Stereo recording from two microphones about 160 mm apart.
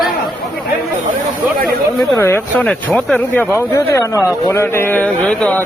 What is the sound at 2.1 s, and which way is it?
Speech, 15° left (ahead or behind).